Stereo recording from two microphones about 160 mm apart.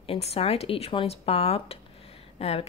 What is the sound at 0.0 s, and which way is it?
Speech, 40° left (ahead or behind).